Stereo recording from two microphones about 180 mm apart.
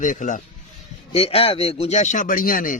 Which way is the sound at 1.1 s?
35° left (ahead or behind).